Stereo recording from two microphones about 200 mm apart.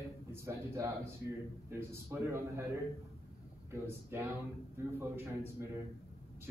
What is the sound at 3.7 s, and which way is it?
Speech, 15° right (ahead or behind).